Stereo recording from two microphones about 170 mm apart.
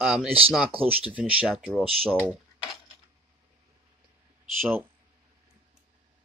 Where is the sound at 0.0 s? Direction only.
5° right (ahead or behind).